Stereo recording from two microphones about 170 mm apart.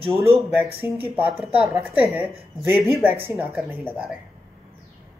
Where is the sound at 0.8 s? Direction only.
10° right (ahead or behind).